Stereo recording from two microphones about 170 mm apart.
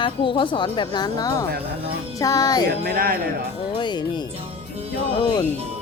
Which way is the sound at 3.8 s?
25° left (ahead or behind).